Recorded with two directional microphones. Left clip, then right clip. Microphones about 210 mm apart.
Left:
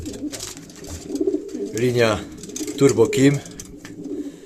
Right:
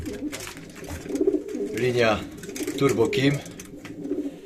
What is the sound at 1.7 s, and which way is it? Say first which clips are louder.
Speech: left 3 dB; 35° left (ahead or behind).